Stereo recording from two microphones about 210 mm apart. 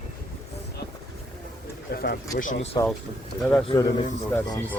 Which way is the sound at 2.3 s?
40° left (ahead or behind).